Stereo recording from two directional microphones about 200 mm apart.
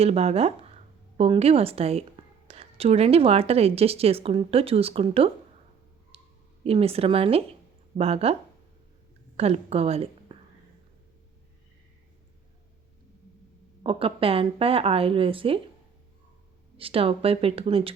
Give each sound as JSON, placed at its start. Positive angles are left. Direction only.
{"t": 0.0, "sound": "a woman's voice", "side_deg": -30}
{"t": 6.1, "sound": "a sound", "side_deg": -30}
{"t": 6.7, "sound": "a woman's voice", "side_deg": -30}
{"t": 9.4, "sound": "a woman's voice", "side_deg": -30}
{"t": 13.8, "sound": "a woman's voice", "side_deg": -25}
{"t": 16.7, "sound": "a woman's voice", "side_deg": -25}